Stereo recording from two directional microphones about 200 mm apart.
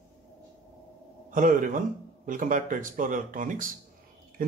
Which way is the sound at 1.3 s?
40° right (ahead or behind).